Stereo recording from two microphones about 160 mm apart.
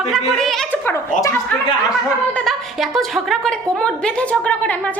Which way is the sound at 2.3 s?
Centre (ahead or behind).